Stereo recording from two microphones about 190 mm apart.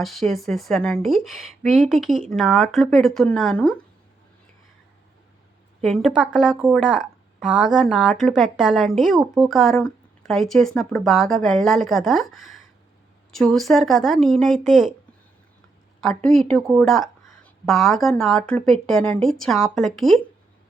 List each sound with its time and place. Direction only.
0.0 s a woman's voice: centre (ahead or behind)
5.8 s a woman's voice: centre (ahead or behind)
16.0 s a woman's voice: centre (ahead or behind)